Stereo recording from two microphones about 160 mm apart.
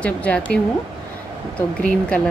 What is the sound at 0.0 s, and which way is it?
Speech, 10° left (ahead or behind).